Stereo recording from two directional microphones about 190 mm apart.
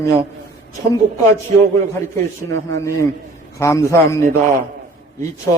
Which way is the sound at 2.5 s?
15° left (ahead or behind).